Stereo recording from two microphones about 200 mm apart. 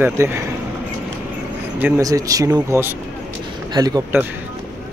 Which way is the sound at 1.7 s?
10° right (ahead or behind).